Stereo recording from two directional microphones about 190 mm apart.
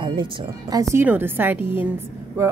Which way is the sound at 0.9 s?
10° right (ahead or behind).